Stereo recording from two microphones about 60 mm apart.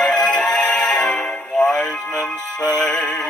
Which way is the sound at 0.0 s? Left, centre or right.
Left.